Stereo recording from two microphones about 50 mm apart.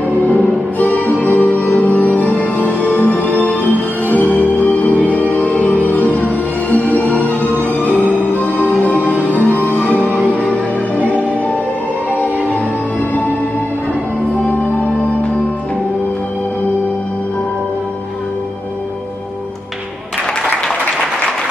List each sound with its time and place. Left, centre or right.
0.3 s music: left
14.5 s music: left